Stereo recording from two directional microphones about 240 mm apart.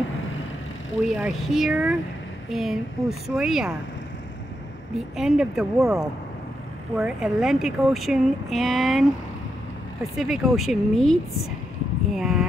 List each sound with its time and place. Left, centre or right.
1.0 s speech: centre
4.9 s speech: centre
7.0 s speech: centre
10.1 s speech: centre